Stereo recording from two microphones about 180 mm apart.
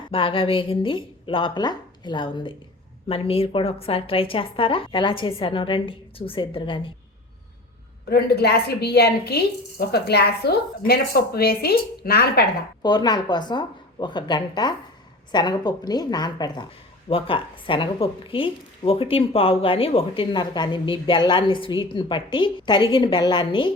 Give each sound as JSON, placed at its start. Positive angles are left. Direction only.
{"t": 0.1, "sound": "a woman's voice", "side_deg": 30}
{"t": 8.1, "sound": "a woman's voice", "side_deg": 65}
{"t": 12.8, "sound": "a woman's voice", "side_deg": 25}